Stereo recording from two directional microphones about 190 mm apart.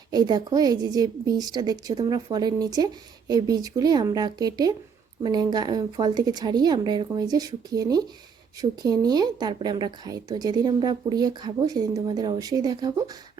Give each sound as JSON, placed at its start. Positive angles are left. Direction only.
{"t": 0.1, "sound": "a woman's voice", "side_deg": -20}